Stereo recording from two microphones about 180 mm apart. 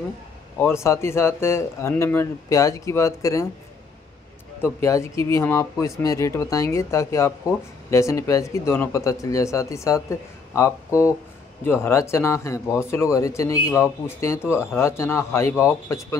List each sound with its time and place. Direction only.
0.6 s speech: 15° left (ahead or behind)
4.7 s speech: 15° left (ahead or behind)
10.9 s speech: 10° right (ahead or behind)
11.6 s speech: 10° left (ahead or behind)